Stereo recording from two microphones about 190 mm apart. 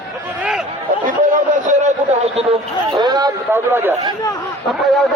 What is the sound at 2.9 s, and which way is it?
A man's voice, 20° right (ahead or behind).